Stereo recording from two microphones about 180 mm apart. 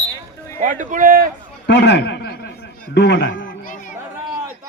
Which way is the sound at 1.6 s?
70° left (ahead or behind).